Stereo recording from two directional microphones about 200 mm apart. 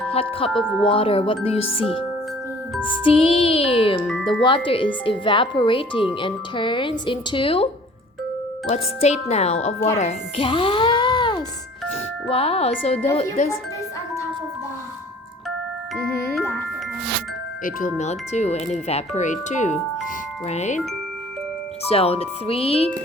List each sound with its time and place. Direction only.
0.1 s speech: 30° left (ahead or behind)
0.6 s speech: centre (ahead or behind)
0.9 s speech: 30° left (ahead or behind)
3.0 s speech: 25° left (ahead or behind)
4.0 s speech: 5° left (ahead or behind)
4.4 s speech: 25° left (ahead or behind)
16.4 s glockenspiel: 10° left (ahead or behind)
17.6 s speech: 45° left (ahead or behind)
21.8 s speech: 30° left (ahead or behind)